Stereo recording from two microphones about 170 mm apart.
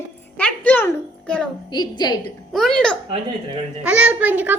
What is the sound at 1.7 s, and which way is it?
Speech, 25° left (ahead or behind).